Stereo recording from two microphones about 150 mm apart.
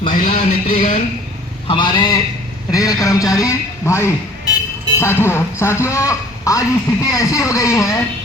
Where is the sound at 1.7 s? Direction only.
30° left (ahead or behind).